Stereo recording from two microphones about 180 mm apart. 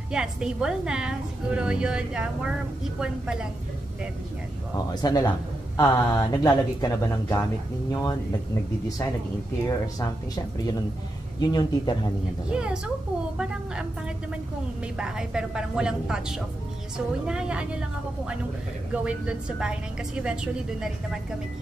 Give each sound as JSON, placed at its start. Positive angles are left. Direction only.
{"t": 0.1, "sound": "a woman's voice", "side_deg": -5}
{"t": 5.0, "sound": "speech", "side_deg": 20}
{"t": 9.7, "sound": "speech", "side_deg": 20}
{"t": 12.4, "sound": "a woman's voice", "side_deg": -5}
{"t": 15.0, "sound": "a woman's voice", "side_deg": -5}
{"t": 19.0, "sound": "a woman's voice", "side_deg": -5}